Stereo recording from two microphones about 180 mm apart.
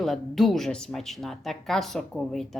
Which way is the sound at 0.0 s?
Centre (ahead or behind).